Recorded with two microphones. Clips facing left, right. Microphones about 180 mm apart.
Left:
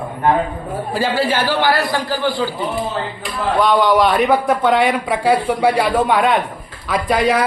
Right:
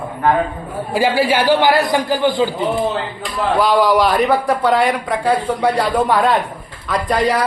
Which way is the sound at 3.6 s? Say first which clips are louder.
Even; centre (ahead or behind).